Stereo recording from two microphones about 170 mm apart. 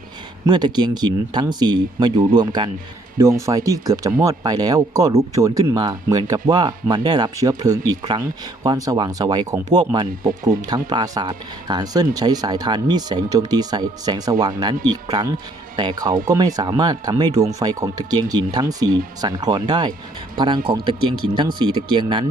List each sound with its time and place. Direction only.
0.4 s speech: 25° right (ahead or behind)